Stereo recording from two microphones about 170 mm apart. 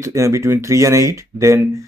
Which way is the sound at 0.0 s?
15° right (ahead or behind).